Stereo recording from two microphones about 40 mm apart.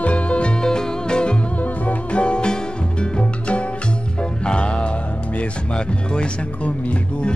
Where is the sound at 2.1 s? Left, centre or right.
Left.